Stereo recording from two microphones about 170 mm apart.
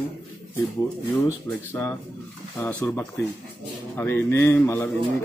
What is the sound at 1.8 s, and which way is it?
Speech, 10° left (ahead or behind).